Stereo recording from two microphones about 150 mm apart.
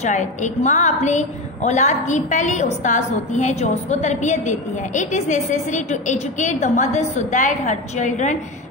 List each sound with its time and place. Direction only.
0.0 s a woman's voice: 50° left (ahead or behind)